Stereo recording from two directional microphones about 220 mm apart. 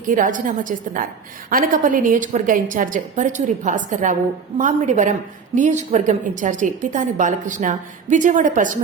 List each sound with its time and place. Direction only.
0.0 s a woman's voice: 35° right (ahead or behind)